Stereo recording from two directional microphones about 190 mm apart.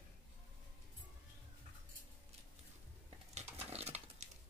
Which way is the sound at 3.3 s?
35° right (ahead or behind).